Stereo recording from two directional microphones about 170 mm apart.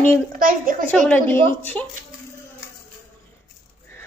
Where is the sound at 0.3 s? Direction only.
55° right (ahead or behind).